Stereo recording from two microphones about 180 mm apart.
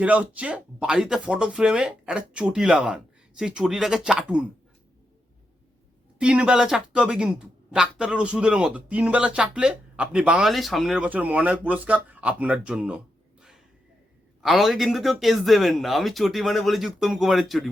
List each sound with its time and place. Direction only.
0.0 s speech: 5° right (ahead or behind)
6.1 s speech: 5° right (ahead or behind)
14.4 s speech: centre (ahead or behind)